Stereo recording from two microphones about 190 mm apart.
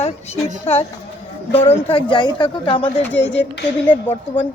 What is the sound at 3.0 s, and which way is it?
Speech, 10° left (ahead or behind).